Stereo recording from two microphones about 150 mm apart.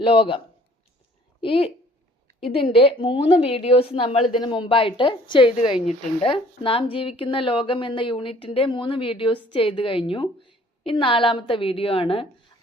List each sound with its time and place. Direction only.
0.0 s a woman's voice: 35° left (ahead or behind)